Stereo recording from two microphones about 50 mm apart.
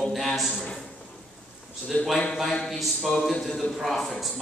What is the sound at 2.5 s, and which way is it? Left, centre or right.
A man's voice, centre.